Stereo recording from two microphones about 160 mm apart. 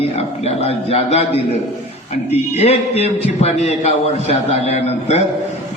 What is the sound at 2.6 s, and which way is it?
A man's voice, 40° left (ahead or behind).